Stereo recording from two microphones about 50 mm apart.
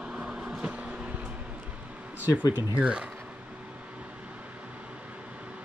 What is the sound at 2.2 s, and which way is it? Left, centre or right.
Speech, right.